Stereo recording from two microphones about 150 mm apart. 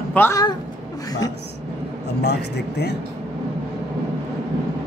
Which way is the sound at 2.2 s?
90° left.